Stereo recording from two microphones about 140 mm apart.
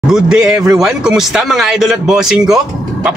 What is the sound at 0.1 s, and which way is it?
Speech, 5° right (ahead or behind).